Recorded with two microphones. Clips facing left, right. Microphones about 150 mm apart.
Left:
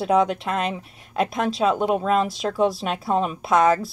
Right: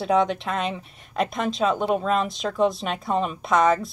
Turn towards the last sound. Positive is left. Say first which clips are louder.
# left 2 dB
turn(degrees=0)  # may be behind; listen again after turning